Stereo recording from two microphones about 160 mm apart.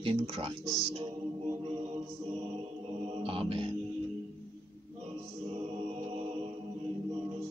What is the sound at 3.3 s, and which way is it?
Music, 35° right (ahead or behind).